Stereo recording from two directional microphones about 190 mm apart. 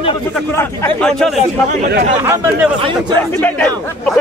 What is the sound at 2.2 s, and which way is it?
Speech, 10° right (ahead or behind).